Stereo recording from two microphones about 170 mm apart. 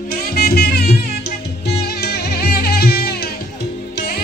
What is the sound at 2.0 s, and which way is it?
Music, 65° left (ahead or behind).